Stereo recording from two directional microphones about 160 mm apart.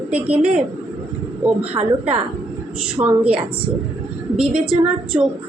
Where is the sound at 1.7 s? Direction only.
40° right (ahead or behind).